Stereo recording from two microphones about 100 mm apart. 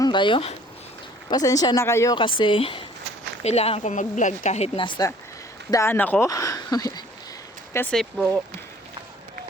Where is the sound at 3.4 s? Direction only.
90° left; by 5.0 s 65° left (ahead or behind).